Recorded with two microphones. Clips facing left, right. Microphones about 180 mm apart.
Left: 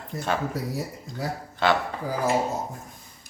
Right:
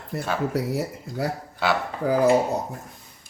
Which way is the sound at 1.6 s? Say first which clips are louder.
Left 1 dB; 10° right (ahead or behind).